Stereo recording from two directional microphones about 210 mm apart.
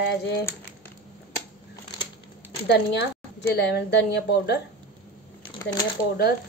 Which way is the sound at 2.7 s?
50° left (ahead or behind).